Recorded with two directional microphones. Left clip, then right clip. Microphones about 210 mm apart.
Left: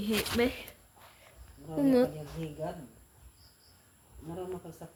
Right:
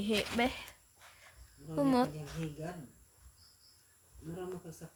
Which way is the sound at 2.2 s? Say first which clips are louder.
Left 2 dB; 10° right (ahead or behind).